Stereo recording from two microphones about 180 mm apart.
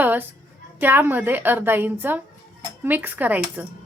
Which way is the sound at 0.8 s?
10° right (ahead or behind).